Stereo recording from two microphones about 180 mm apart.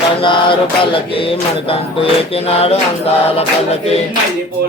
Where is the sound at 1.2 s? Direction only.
30° left (ahead or behind).